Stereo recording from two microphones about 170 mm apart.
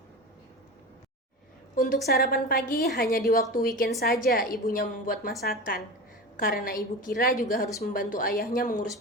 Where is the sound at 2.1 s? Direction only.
65° left (ahead or behind).